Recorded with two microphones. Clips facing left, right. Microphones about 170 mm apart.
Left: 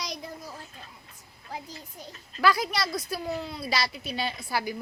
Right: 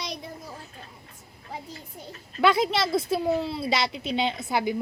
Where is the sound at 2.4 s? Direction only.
25° right (ahead or behind).